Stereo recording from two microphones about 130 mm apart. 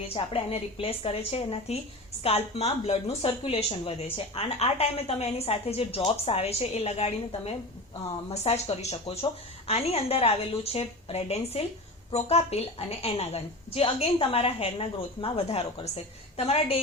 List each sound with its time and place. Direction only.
0.1 s a woman's voice: 50° left (ahead or behind)